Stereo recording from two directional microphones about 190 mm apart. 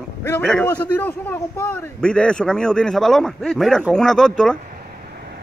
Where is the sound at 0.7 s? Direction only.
10° left (ahead or behind).